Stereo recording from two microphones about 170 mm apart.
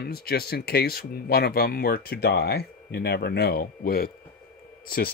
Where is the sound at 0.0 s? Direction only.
65° left (ahead or behind).